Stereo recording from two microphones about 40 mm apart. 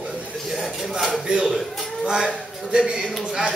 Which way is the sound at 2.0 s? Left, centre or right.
Right.